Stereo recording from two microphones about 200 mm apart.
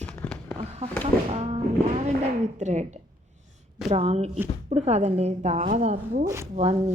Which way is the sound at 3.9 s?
30° right (ahead or behind).